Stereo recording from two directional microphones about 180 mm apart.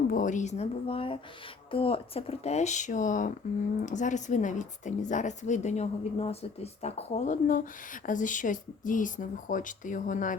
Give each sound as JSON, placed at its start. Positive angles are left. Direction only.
{"t": 0.1, "sound": "a woman's voice", "side_deg": 45}